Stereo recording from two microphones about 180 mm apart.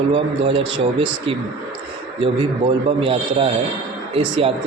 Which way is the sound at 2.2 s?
30° right (ahead or behind).